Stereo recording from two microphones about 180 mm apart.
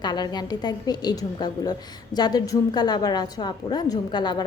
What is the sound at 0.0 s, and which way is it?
A woman's voice, 25° left (ahead or behind).